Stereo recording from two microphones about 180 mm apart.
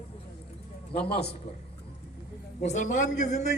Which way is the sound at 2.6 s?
45° left (ahead or behind).